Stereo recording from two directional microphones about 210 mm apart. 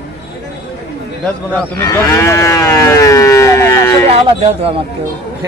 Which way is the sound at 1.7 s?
10° left (ahead or behind).